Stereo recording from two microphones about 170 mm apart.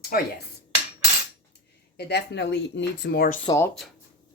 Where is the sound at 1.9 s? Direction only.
75° left (ahead or behind); by 3.4 s 60° left (ahead or behind).